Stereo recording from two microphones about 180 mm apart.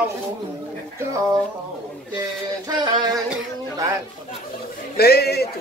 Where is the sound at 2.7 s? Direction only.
25° right (ahead or behind).